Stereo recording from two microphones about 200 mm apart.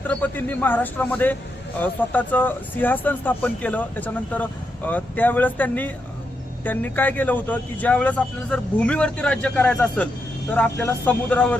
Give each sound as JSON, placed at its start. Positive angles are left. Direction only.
{"t": 0.1, "sound": "speech", "side_deg": 5}